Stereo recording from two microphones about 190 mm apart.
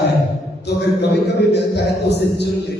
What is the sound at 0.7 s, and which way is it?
A man's voice, 60° left (ahead or behind).